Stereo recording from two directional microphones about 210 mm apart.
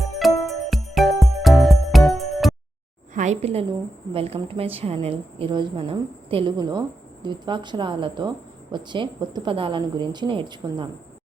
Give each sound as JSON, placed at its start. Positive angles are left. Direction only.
{"t": 0.4, "sound": "music", "side_deg": 0}
{"t": 3.2, "sound": "a sound", "side_deg": -30}
{"t": 4.1, "sound": "a woman's voice", "side_deg": -25}